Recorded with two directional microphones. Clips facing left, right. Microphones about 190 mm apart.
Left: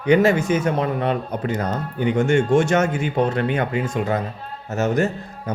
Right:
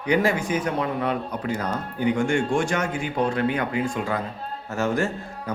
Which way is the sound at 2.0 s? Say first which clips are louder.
Left 4 dB; 25° left (ahead or behind).